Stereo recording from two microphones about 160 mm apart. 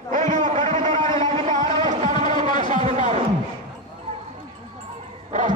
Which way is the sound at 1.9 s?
50° right (ahead or behind).